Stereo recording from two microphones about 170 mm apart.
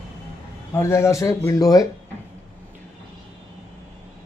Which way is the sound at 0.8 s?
15° left (ahead or behind).